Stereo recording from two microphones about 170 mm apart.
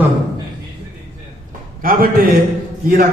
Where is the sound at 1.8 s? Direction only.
60° right (ahead or behind).